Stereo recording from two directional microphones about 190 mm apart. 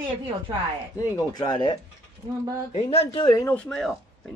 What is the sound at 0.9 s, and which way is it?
Speech, 20° left (ahead or behind).